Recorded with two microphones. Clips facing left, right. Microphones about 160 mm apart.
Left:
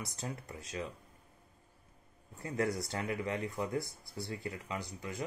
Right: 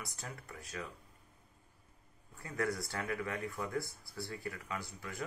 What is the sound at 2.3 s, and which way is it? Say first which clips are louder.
Speech: left 3 dB; 20° left (ahead or behind).